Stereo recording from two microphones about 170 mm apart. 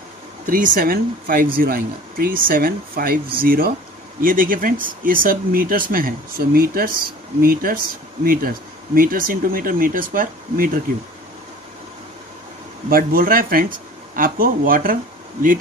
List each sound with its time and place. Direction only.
0.5 s speech: 55° right (ahead or behind)
12.9 s speech: 55° right (ahead or behind)